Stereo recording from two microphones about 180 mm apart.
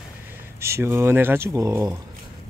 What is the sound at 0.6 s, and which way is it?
Speech, 15° right (ahead or behind).